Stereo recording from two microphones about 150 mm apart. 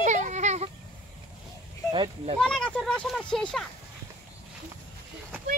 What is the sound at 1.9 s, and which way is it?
Speech, 30° right (ahead or behind).